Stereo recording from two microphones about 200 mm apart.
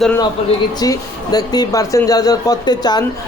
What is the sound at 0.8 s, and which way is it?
Speech, 20° left (ahead or behind).